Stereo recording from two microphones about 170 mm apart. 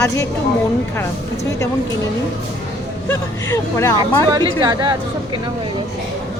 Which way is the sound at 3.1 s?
15° left (ahead or behind).